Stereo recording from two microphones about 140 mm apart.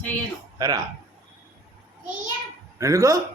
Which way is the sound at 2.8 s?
20° right (ahead or behind).